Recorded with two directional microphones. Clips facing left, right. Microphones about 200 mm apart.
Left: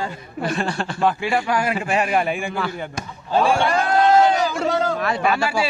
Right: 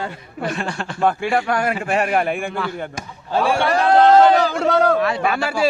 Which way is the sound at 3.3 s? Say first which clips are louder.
Even; 65° right (ahead or behind).